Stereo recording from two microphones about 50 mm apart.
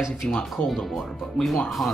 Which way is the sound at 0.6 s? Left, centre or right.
Centre.